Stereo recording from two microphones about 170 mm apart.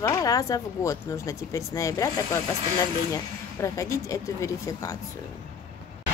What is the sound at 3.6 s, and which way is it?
Speech, 20° left (ahead or behind).